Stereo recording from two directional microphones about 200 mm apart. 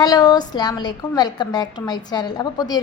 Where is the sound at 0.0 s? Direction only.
20° left (ahead or behind).